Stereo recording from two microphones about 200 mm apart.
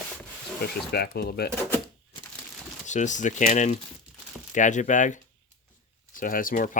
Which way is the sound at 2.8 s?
35° left (ahead or behind).